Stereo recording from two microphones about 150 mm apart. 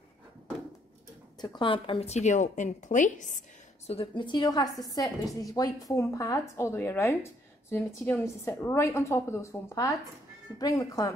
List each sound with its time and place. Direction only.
1.4 s a woman's voice: 30° left (ahead or behind); by 3.9 s 55° left (ahead or behind)
3.9 s a woman's voice: 35° left (ahead or behind)